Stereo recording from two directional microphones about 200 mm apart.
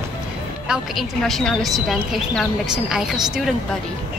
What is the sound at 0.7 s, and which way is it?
Speech, centre (ahead or behind).